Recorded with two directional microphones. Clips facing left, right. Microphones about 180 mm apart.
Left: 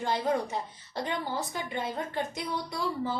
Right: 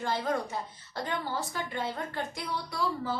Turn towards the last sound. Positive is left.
turn(degrees=20)  # may be behind; listen again after turning